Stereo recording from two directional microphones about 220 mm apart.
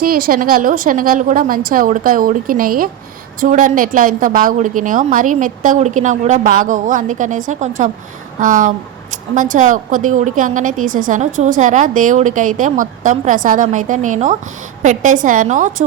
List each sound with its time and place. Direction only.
0.0 s a woman's voice: 40° right (ahead or behind)